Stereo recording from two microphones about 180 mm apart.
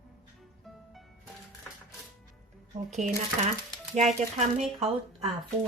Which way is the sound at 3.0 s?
40° right (ahead or behind).